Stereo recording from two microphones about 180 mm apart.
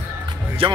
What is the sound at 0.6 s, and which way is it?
Speech, 30° right (ahead or behind).